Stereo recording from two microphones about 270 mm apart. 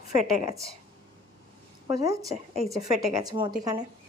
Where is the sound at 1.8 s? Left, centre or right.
Centre.